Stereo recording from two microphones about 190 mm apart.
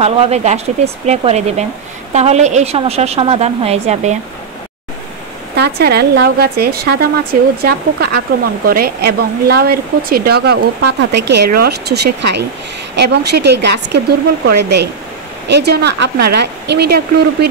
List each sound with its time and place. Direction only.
0.0 s a woman's voice: 35° right (ahead or behind)
5.6 s speech: 55° right (ahead or behind)